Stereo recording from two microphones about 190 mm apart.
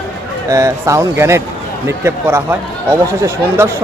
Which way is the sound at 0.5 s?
15° right (ahead or behind).